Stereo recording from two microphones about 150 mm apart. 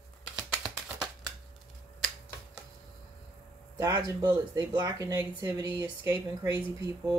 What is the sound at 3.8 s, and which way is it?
Speech, 20° right (ahead or behind).